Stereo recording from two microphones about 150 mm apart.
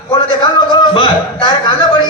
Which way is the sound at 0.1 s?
30° left (ahead or behind).